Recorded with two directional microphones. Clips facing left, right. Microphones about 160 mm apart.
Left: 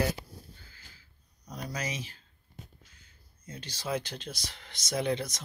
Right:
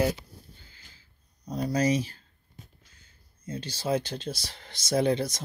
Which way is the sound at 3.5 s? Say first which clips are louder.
Right 6 dB; 30° right (ahead or behind).